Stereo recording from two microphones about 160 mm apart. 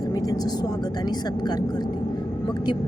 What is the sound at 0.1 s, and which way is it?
Speech, 25° left (ahead or behind).